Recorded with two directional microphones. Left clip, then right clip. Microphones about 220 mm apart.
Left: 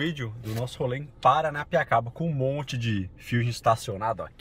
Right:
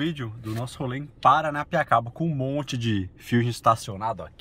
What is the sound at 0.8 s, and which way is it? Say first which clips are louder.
A man's voice: even; 15° right (ahead or behind).